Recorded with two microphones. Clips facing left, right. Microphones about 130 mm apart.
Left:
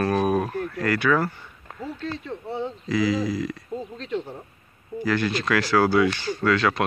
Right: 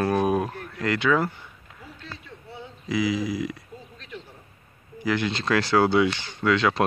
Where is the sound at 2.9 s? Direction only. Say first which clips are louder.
Left 1 dB; 15° right (ahead or behind).